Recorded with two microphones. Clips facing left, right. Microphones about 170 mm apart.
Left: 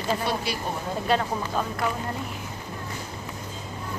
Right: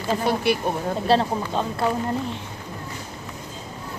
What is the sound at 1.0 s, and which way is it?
Speech, 30° right (ahead or behind).